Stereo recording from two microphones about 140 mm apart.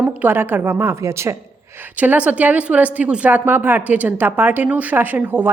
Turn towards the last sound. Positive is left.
turn(degrees=-15)  # may be behind; listen again after turning